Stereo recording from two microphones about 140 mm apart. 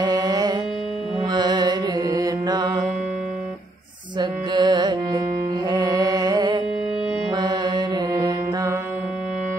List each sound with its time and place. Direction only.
0.0 s music: 25° right (ahead or behind)
4.2 s carnatic music: 30° right (ahead or behind)
7.3 s music: 30° right (ahead or behind)